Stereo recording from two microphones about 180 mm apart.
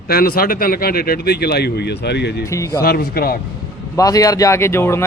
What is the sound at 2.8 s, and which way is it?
Speech, 55° left (ahead or behind).